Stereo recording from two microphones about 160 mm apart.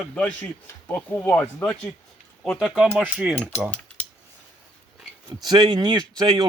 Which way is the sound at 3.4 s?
10° left (ahead or behind).